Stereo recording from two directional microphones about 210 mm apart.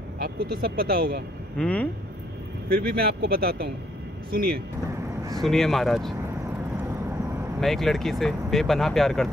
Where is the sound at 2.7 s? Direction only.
45° right (ahead or behind).